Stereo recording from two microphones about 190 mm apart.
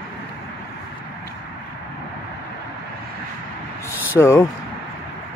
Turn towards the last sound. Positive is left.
turn(degrees=15)  # may be behind; listen again after turning